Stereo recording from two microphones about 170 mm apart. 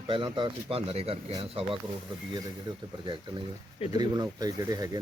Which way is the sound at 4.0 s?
25° right (ahead or behind).